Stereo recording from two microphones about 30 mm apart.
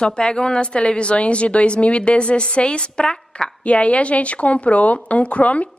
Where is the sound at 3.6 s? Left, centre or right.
Left.